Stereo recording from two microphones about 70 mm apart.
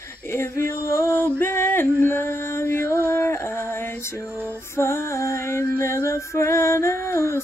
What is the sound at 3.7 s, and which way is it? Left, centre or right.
Music, left.